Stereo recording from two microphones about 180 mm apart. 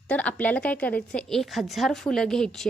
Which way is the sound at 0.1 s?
10° left (ahead or behind).